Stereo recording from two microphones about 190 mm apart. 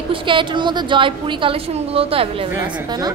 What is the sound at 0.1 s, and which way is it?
A woman's voice, 25° right (ahead or behind).